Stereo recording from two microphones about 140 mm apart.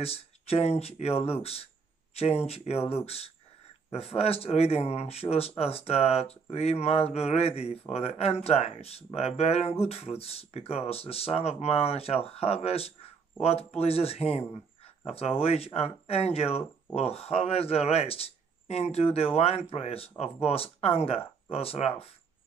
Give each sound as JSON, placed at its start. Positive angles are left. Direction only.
{"t": 0.0, "sound": "speech", "side_deg": 45}